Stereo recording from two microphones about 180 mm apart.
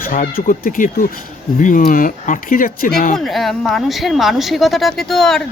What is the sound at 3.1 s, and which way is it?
Speech, centre (ahead or behind).